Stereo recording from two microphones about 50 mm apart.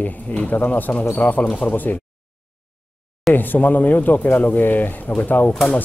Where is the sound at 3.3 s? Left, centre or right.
Left.